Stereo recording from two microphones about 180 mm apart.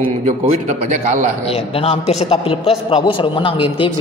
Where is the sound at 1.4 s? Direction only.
35° left (ahead or behind).